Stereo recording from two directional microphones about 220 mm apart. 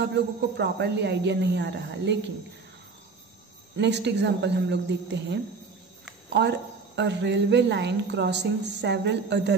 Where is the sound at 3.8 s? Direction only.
50° right (ahead or behind).